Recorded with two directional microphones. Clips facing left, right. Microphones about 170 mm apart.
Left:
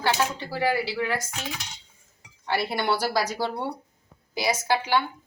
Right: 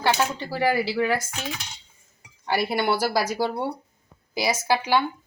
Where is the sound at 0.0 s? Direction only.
15° right (ahead or behind).